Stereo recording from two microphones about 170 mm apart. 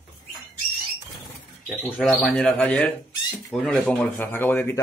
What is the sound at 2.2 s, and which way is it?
Speech, 5° left (ahead or behind).